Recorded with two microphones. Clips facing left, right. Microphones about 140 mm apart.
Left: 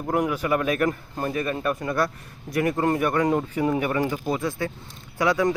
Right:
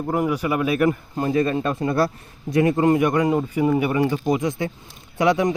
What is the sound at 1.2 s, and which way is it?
Speech, 30° right (ahead or behind).